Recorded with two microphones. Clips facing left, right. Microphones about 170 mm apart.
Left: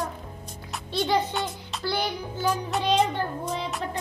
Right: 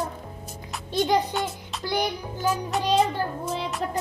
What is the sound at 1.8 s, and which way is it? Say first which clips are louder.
Music: right 2 dB; 15° right (ahead or behind).